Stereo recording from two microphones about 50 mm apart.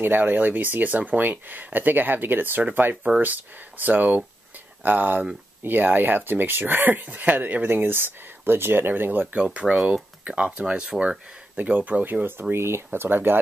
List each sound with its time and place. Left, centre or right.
0.0 s speech: right
9.3 s speech: right